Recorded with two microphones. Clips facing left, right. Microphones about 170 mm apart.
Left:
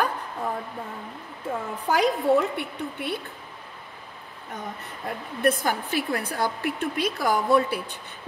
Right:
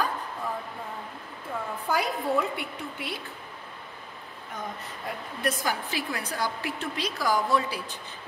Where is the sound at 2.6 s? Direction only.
60° left (ahead or behind).